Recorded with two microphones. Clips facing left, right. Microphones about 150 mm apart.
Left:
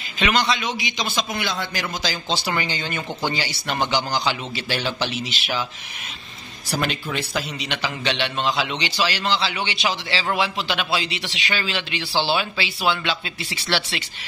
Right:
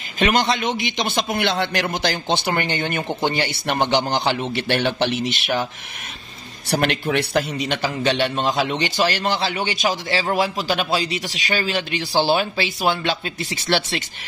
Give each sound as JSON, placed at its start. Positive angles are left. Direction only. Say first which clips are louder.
{"t": 0.2, "sound": "a man's voice", "louder": "right 3 dB", "side_deg": -50}
{"t": 6.7, "sound": "a man's voice", "louder": "right 5 dB", "side_deg": -65}